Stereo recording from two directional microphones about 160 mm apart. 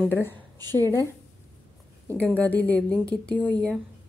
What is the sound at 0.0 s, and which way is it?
A woman's voice, 15° left (ahead or behind).